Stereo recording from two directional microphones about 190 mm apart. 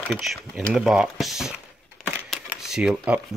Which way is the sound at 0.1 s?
Centre (ahead or behind).